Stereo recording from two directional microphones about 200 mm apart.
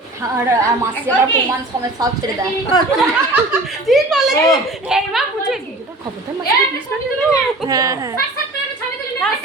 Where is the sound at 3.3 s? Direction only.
5° right (ahead or behind).